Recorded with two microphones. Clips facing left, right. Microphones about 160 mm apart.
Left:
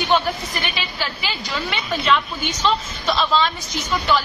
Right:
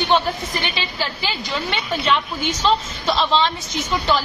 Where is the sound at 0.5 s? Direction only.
30° right (ahead or behind).